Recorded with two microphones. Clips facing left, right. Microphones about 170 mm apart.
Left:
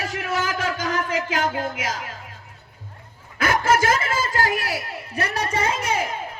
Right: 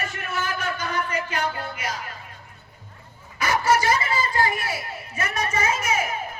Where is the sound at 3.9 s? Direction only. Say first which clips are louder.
Left 1 dB; 90° left; by 5.2 s 75° left (ahead or behind).